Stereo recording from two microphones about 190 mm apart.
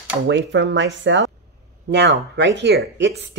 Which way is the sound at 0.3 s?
70° right (ahead or behind).